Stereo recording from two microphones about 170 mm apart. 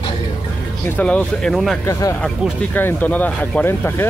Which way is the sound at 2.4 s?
5° right (ahead or behind).